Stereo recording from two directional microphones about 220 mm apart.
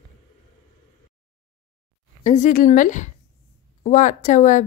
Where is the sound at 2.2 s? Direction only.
35° left (ahead or behind).